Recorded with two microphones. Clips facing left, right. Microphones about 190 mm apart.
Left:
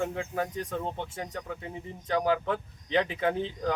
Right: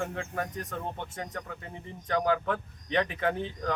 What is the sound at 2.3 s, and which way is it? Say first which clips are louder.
Speech: left 1 dB; 20° left (ahead or behind).